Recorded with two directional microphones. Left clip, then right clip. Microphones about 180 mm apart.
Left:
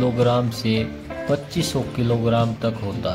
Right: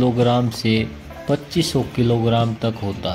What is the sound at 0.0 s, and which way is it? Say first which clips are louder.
Speech: right 1 dB; 15° right (ahead or behind).